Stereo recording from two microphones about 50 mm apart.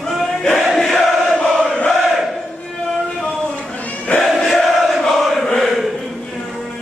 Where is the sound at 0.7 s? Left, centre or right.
Centre.